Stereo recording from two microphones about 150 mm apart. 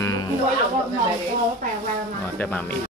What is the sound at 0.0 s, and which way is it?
Music, 25° left (ahead or behind).